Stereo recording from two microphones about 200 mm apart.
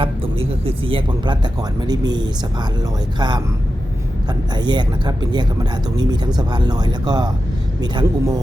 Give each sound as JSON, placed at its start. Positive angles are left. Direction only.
{"t": 0.0, "sound": "speech", "side_deg": -30}